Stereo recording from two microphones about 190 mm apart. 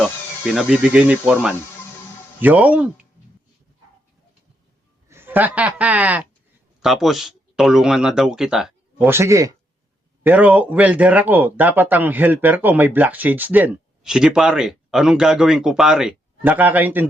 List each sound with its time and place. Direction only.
0.0 s speech: centre (ahead or behind)
5.0 s speech: 10° right (ahead or behind)
9.1 s speech: 15° right (ahead or behind)